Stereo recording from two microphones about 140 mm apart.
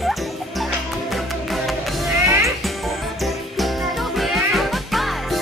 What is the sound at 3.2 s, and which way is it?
Music, centre (ahead or behind).